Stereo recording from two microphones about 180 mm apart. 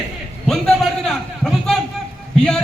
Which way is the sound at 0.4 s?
5° left (ahead or behind).